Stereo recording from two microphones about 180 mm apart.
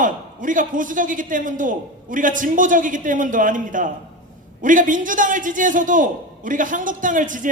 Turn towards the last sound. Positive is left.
turn(degrees=-45)  # may be behind; listen again after turning